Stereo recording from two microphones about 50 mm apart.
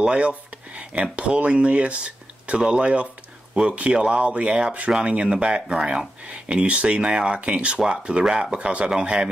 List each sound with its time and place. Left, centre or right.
0.0 s speech: right